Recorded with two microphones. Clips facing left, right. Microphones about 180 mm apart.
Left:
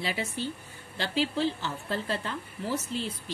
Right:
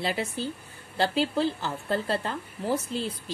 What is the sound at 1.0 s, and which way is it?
Speech, 40° right (ahead or behind).